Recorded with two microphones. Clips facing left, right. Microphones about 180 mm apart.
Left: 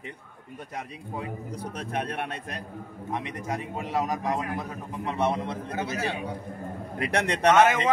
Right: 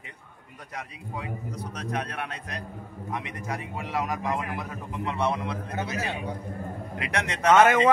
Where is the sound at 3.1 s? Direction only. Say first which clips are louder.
Left 2 dB; 25° left (ahead or behind).